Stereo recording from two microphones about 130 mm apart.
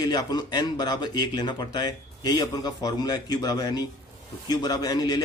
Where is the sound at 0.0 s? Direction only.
30° left (ahead or behind).